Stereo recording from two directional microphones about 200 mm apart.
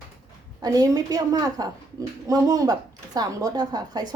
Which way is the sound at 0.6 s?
20° right (ahead or behind).